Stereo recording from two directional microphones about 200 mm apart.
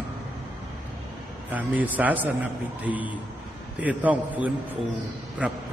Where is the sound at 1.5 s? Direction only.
10° right (ahead or behind).